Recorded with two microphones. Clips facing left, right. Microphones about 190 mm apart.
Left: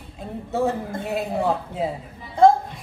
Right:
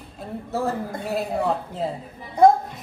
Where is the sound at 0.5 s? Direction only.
Centre (ahead or behind).